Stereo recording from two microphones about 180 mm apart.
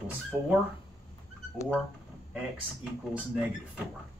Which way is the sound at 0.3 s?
5° right (ahead or behind).